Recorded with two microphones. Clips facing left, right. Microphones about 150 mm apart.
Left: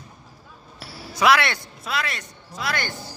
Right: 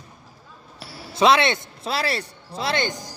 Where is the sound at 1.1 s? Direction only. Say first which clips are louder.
Right 2 dB; 25° right (ahead or behind).